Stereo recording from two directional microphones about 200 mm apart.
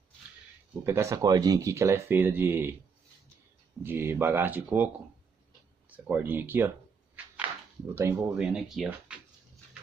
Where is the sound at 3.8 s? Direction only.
10° right (ahead or behind).